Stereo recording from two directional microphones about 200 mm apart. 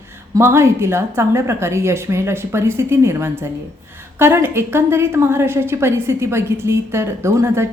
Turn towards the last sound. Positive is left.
turn(degrees=-15)  # may be behind; listen again after turning